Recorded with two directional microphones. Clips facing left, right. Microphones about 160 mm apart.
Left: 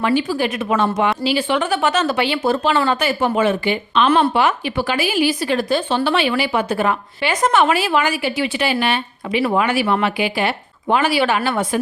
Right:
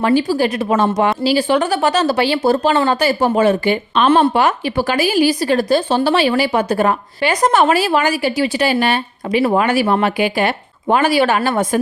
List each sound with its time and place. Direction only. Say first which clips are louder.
0.0 s speech: right 4 dB; 35° right (ahead or behind)